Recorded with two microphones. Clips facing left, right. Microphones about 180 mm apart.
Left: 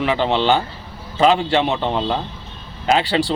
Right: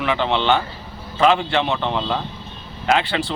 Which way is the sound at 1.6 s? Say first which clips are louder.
Left 2 dB; 35° left (ahead or behind).